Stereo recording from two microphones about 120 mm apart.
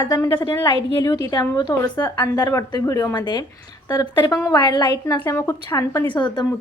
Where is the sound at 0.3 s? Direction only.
40° left (ahead or behind).